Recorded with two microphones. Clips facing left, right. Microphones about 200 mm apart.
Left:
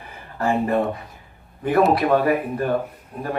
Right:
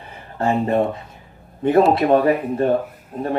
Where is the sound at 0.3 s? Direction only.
25° right (ahead or behind).